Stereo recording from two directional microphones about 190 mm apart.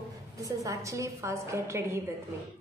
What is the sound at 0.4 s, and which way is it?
Speech, 15° right (ahead or behind).